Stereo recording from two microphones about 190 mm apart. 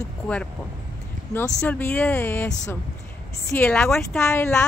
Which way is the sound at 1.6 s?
10° left (ahead or behind).